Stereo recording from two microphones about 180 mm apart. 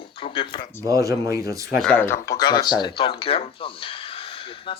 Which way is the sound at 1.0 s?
15° right (ahead or behind).